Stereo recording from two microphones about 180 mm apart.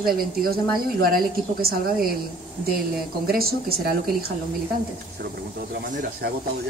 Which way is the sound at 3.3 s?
55° right (ahead or behind).